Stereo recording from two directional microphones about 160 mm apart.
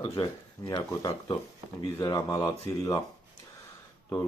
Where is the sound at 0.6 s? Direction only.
20° left (ahead or behind).